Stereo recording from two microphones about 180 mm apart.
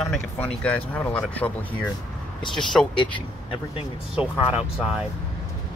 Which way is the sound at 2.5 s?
Centre (ahead or behind).